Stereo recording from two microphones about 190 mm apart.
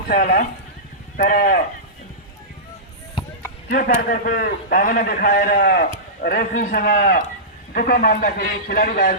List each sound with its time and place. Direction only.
0.1 s a man's voice: 55° left (ahead or behind)
3.7 s a man's voice: 50° left (ahead or behind)